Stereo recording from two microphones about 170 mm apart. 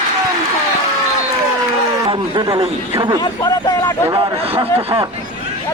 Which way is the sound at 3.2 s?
20° left (ahead or behind).